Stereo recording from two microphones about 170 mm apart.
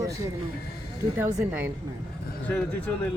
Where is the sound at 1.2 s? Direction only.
10° right (ahead or behind).